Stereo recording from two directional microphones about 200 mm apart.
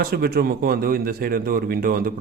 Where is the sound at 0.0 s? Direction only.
50° right (ahead or behind).